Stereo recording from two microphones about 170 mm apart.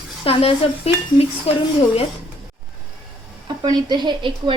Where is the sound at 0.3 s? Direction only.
35° left (ahead or behind).